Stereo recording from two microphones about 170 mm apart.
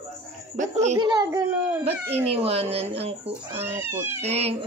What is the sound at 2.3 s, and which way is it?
Speech, 35° right (ahead or behind).